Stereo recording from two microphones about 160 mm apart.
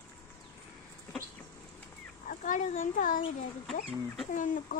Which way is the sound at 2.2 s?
55° left (ahead or behind).